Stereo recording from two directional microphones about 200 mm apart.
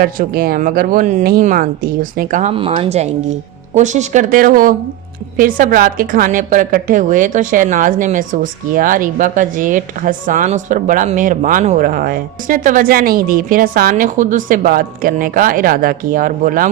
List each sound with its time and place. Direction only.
0.0 s a woman's voice: 50° right (ahead or behind)